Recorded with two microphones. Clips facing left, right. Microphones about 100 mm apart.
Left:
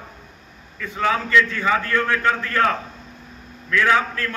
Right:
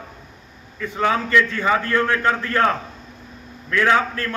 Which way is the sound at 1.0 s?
30° right (ahead or behind).